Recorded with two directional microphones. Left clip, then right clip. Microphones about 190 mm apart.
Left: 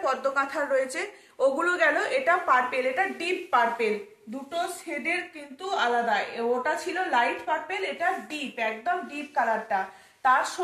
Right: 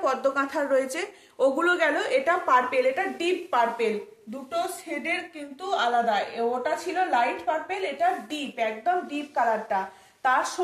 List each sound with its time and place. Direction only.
0.0 s a woman's voice: 50° right (ahead or behind)